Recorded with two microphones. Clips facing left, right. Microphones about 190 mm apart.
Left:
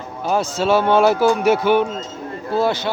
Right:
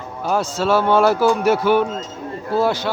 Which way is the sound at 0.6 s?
25° left (ahead or behind).